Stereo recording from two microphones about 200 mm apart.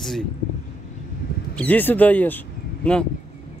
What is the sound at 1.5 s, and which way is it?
Speech, 5° left (ahead or behind).